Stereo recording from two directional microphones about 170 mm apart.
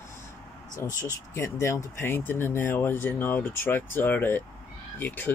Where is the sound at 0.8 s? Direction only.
20° left (ahead or behind).